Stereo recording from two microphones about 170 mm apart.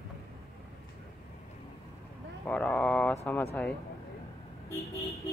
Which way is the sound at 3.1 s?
15° left (ahead or behind).